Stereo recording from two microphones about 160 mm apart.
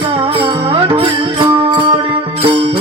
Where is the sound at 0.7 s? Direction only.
35° right (ahead or behind).